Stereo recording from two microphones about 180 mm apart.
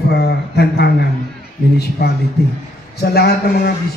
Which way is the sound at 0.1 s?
65° left (ahead or behind).